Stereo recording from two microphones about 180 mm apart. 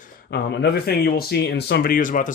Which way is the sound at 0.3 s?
65° left (ahead or behind).